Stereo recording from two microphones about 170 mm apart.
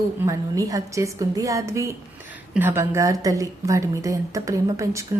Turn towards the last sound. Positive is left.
turn(degrees=-20)  # may be behind; listen again after turning